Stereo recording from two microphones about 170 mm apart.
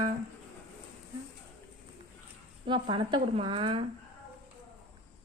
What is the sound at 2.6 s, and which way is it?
Speech, 30° right (ahead or behind).